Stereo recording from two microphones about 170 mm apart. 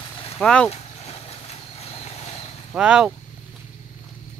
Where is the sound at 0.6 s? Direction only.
40° left (ahead or behind).